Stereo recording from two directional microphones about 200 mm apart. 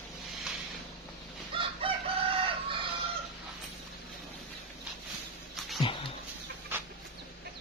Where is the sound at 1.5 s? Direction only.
25° right (ahead or behind).